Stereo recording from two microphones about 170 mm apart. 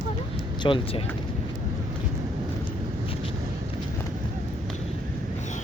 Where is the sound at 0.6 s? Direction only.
30° left (ahead or behind).